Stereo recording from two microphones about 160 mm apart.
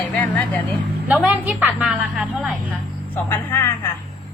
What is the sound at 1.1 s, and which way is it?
A woman's voice, 5° right (ahead or behind).